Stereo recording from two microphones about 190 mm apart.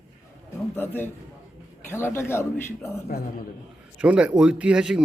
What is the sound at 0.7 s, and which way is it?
A man's voice, 10° left (ahead or behind).